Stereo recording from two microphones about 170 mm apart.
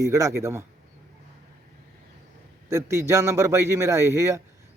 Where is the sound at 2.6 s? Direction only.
15° right (ahead or behind).